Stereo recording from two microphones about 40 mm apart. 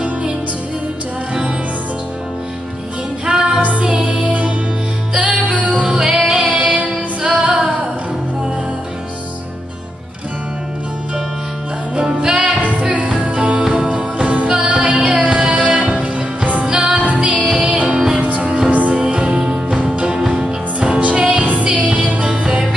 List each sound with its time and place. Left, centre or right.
3.3 s music: centre
4.0 s music: right
5.9 s music: centre
11.9 s music: right
14.5 s music: right
18.7 s music: right
19.0 s music: right
20.2 s music: centre
21.0 s music: right